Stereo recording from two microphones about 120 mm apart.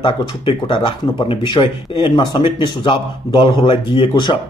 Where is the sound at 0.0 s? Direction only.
45° left (ahead or behind).